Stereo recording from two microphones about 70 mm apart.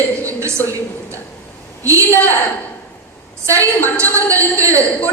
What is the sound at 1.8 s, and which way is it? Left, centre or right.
Speech, right.